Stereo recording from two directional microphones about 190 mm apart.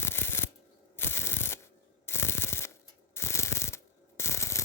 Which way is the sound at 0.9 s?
10° left (ahead or behind).